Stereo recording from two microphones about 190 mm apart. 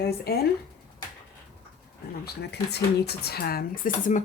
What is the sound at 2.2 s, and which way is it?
Speech, 60° left (ahead or behind).